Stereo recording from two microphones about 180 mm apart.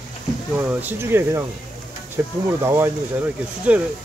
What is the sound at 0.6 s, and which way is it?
Speech, 10° right (ahead or behind).